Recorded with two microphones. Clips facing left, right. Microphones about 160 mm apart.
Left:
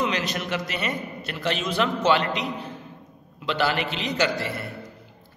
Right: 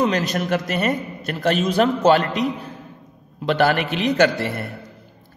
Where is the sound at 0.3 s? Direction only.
50° right (ahead or behind).